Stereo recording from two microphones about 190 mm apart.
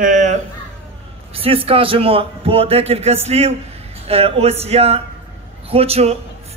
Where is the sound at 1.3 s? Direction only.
30° right (ahead or behind).